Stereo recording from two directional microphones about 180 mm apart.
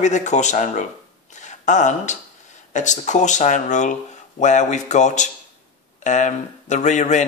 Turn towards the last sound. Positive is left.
turn(degrees=40)  # may be behind; listen again after turning